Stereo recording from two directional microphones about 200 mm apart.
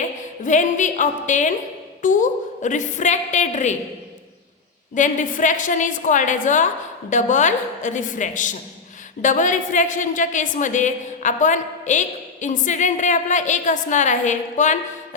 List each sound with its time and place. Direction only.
0.4 s a woman's voice: 40° left (ahead or behind)
4.9 s a woman's voice: 40° left (ahead or behind)